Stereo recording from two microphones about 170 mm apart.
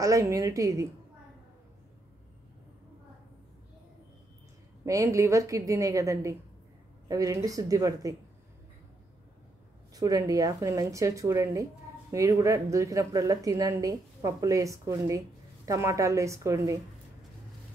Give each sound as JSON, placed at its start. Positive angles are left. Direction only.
{"t": 0.0, "sound": "a woman's voice", "side_deg": -20}
{"t": 4.8, "sound": "a woman's voice", "side_deg": -20}
{"t": 9.9, "sound": "a woman's voice", "side_deg": -20}